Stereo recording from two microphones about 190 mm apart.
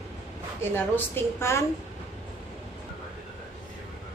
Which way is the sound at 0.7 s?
10° left (ahead or behind).